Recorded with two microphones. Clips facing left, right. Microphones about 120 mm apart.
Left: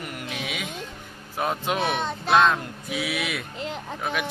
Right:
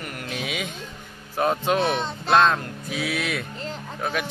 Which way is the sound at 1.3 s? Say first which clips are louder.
Right 4 dB; 5° left (ahead or behind).